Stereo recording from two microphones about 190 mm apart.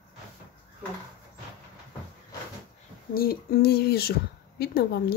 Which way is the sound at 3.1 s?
50° left (ahead or behind).